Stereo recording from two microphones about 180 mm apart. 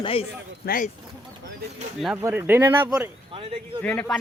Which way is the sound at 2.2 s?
15° right (ahead or behind).